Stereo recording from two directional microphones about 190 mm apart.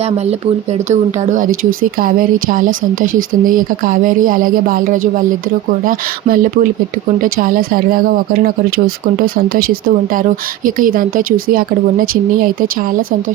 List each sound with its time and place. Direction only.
0.9 s speech: 40° right (ahead or behind)
9.2 s speech: 50° right (ahead or behind)